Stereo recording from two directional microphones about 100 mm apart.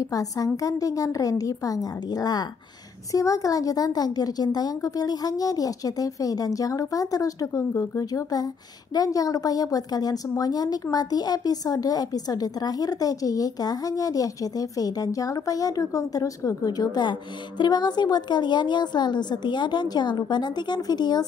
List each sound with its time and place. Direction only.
0.1 s a woman's voice: 35° left (ahead or behind)